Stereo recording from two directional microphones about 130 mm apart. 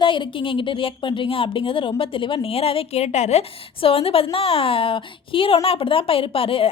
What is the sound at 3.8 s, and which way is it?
A woman's voice, 45° left (ahead or behind).